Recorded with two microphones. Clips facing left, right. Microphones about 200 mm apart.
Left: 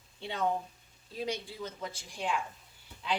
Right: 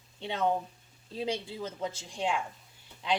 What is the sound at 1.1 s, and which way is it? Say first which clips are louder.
Speech: right 3 dB; 25° right (ahead or behind).